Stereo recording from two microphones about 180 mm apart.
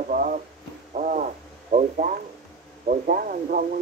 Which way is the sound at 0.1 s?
45° right (ahead or behind).